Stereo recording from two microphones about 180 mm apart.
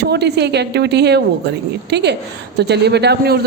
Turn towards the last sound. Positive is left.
turn(degrees=-65)  # may be behind; listen again after turning